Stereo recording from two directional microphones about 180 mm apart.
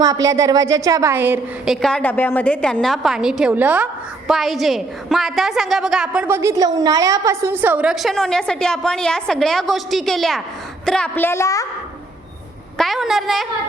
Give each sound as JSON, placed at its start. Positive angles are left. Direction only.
{"t": 0.0, "sound": "a woman's voice", "side_deg": -20}
{"t": 12.7, "sound": "a woman's voice", "side_deg": 0}